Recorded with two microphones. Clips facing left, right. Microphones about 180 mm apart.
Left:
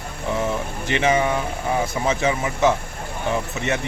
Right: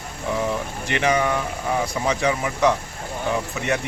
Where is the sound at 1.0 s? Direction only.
25° left (ahead or behind).